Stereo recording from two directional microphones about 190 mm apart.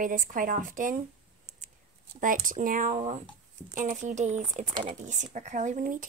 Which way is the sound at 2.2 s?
45° right (ahead or behind).